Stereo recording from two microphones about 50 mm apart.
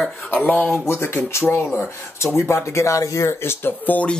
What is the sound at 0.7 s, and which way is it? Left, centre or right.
Speech, left.